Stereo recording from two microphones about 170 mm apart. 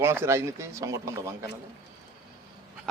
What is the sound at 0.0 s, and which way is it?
Speech, 15° right (ahead or behind).